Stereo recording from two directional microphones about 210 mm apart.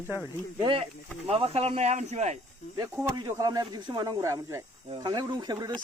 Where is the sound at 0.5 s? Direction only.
20° right (ahead or behind).